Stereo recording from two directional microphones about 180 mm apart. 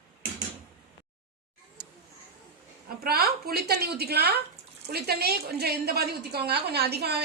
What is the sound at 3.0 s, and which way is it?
A woman's voice, 60° right (ahead or behind).